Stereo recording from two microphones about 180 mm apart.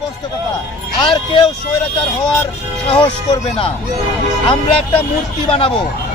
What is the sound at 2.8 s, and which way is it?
Speech, 25° left (ahead or behind).